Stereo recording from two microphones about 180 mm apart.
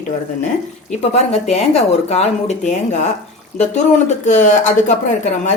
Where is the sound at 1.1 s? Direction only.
35° left (ahead or behind).